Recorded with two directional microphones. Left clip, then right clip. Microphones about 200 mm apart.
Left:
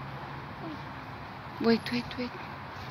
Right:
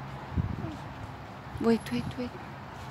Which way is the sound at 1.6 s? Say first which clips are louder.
Left 1 dB; 10° right (ahead or behind).